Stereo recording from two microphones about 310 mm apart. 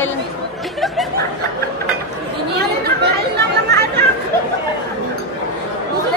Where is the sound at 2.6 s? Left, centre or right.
Right.